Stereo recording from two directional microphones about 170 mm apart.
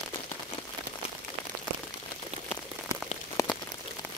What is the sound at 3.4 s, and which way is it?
Rain on surface, 20° left (ahead or behind).